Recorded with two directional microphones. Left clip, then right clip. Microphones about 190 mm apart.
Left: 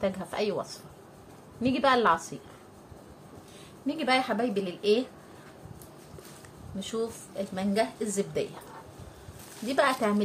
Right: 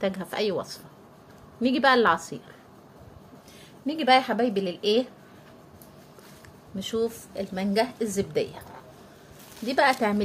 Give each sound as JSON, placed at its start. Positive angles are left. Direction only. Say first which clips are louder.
{"t": 0.0, "sound": "a woman's voice", "louder": "right 2 dB", "side_deg": -45}
{"t": 3.8, "sound": "a woman's voice", "louder": "right 6 dB", "side_deg": -40}
{"t": 6.8, "sound": "a woman's voice", "louder": "right 5 dB", "side_deg": -45}
{"t": 9.7, "sound": "a woman's voice", "louder": "right 3 dB", "side_deg": -40}